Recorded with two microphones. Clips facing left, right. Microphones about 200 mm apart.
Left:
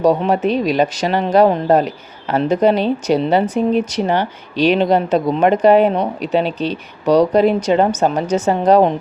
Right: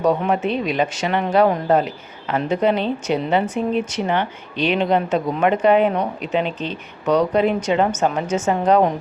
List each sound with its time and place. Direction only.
0.3 s speech: 35° left (ahead or behind)